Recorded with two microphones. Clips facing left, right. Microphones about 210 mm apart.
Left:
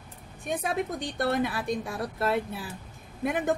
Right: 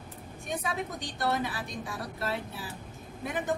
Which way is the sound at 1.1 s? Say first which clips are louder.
Left 4 dB; 55° left (ahead or behind).